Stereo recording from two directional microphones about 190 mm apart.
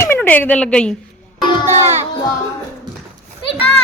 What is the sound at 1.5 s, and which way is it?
Speech, 25° left (ahead or behind).